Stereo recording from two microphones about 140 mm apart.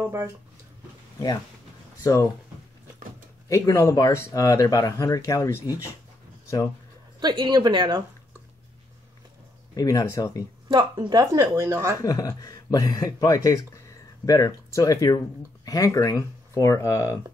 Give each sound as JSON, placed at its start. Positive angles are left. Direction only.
{"t": 2.0, "sound": "speech", "side_deg": 25}
{"t": 3.4, "sound": "speech", "side_deg": 20}
{"t": 7.2, "sound": "speech", "side_deg": -30}
{"t": 9.8, "sound": "speech", "side_deg": 25}
{"t": 10.7, "sound": "speech", "side_deg": -30}
{"t": 12.0, "sound": "speech", "side_deg": 25}